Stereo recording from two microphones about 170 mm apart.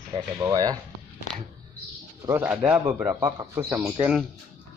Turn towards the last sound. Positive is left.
turn(degrees=-10)  # may be behind; listen again after turning